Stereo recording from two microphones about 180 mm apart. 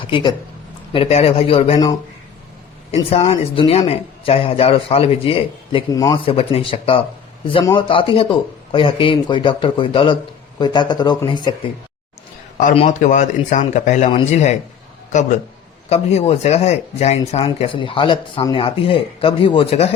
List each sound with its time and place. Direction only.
0.1 s speech: 25° left (ahead or behind)
3.1 s speech: 30° left (ahead or behind)
12.5 s speech: 40° left (ahead or behind)
15.1 s a man's voice: 40° left (ahead or behind)